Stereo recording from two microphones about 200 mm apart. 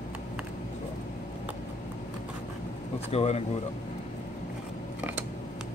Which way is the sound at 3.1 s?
30° left (ahead or behind).